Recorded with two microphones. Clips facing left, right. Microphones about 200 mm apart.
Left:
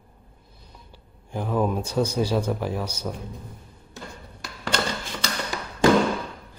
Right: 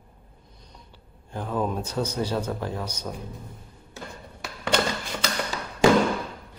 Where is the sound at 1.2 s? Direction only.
10° left (ahead or behind).